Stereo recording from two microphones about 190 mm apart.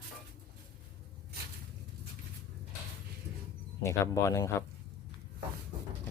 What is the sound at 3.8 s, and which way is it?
Speech, 15° left (ahead or behind).